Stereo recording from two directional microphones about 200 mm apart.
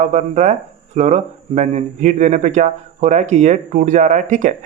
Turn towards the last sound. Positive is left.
turn(degrees=-40)  # may be behind; listen again after turning